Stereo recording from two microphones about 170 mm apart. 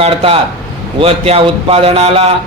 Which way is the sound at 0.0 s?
35° right (ahead or behind).